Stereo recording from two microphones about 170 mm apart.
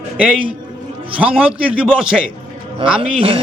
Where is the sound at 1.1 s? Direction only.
10° right (ahead or behind).